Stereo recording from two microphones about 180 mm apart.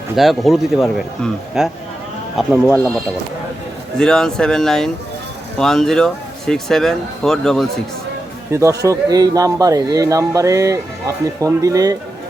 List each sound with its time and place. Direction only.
0.2 s speech: centre (ahead or behind)
3.9 s speech: 5° left (ahead or behind)
8.5 s speech: 15° right (ahead or behind)